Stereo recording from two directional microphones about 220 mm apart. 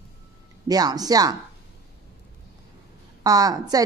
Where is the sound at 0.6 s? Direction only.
15° right (ahead or behind).